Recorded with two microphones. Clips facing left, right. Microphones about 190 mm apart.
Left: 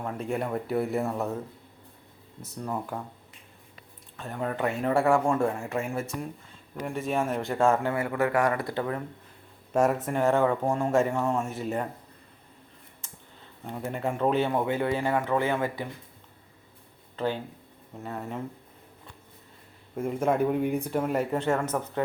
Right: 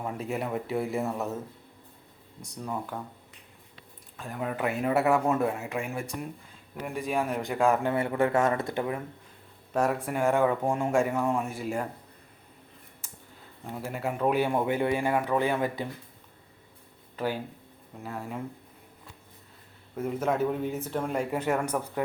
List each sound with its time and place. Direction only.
0.0 s speech: 5° right (ahead or behind)
2.4 s speech: centre (ahead or behind)
4.2 s speech: 5° right (ahead or behind)
7.7 s speech: 20° right (ahead or behind)
9.7 s speech: 5° left (ahead or behind)
10.1 s speech: 10° right (ahead or behind)
13.7 s speech: 5° right (ahead or behind)
17.2 s speech: 10° right (ahead or behind)
20.0 s speech: 10° left (ahead or behind)
21.3 s speech: 10° right (ahead or behind)